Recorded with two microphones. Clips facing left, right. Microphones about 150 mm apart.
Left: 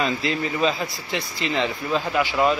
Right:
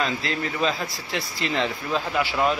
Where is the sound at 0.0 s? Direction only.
Centre (ahead or behind).